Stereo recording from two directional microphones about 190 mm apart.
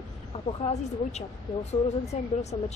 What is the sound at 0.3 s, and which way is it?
Speech, 30° left (ahead or behind).